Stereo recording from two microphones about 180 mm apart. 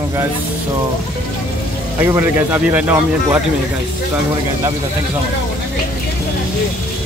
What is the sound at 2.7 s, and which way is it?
Speech, 10° right (ahead or behind).